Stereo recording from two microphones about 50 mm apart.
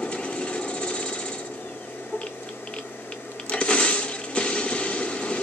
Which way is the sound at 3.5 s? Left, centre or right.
Left.